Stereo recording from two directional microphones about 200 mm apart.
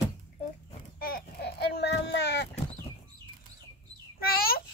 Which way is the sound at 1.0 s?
45° left (ahead or behind).